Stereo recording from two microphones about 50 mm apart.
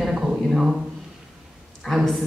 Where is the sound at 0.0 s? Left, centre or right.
Centre.